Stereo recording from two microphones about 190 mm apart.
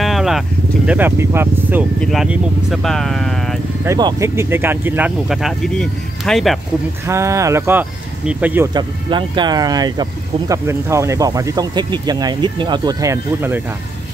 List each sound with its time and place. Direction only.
0.0 s a sound: centre (ahead or behind)
0.8 s speech: 10° right (ahead or behind)
2.0 s speech: centre (ahead or behind)
3.8 s speech: 15° right (ahead or behind); by 6.6 s centre (ahead or behind)
7.1 s speech: 15° right (ahead or behind)
8.7 s speech: 25° right (ahead or behind)